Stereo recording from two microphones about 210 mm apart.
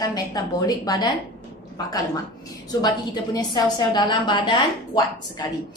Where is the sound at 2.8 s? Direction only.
20° left (ahead or behind).